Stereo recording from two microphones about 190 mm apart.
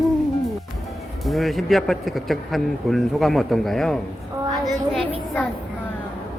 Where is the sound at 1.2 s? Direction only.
Centre (ahead or behind).